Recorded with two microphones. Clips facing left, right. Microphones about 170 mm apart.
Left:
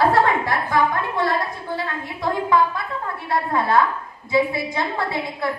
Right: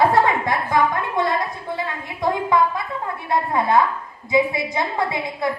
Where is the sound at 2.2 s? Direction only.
20° right (ahead or behind).